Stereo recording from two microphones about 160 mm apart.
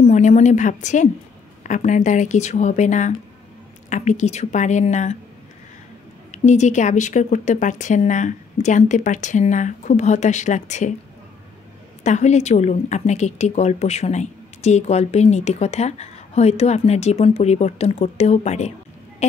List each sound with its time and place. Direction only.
0.0 s a sound: 45° left (ahead or behind)
1.6 s a woman's voice: 50° left (ahead or behind)
6.3 s a woman's voice: 45° left (ahead or behind)
12.0 s a woman's voice: 45° left (ahead or behind)